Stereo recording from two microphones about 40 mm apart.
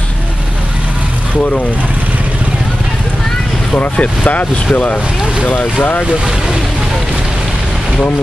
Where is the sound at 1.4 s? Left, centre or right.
Left.